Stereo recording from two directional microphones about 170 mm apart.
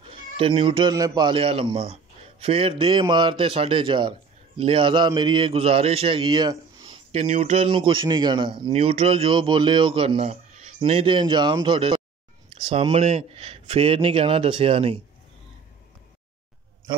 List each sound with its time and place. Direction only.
0.4 s speech: 30° right (ahead or behind)
7.2 s speech: 40° right (ahead or behind)